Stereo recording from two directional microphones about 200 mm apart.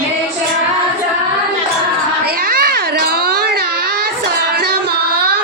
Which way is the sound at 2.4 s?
50° right (ahead or behind).